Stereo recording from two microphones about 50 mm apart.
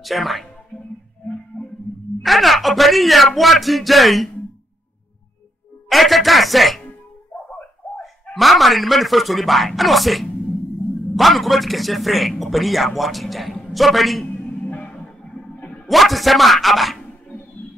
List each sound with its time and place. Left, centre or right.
0.0 s speech: centre
1.5 s a sound: left
2.2 s speech: centre
5.9 s speech: centre
7.3 s a sound: left
8.0 s a man's voice: centre
14.3 s music: left
15.5 s a sound: left
15.9 s speech: centre